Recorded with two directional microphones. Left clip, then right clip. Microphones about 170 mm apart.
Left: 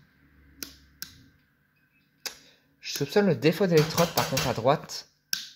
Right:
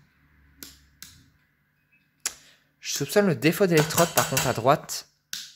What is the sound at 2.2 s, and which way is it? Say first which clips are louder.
Speech: right 4 dB; 35° right (ahead or behind).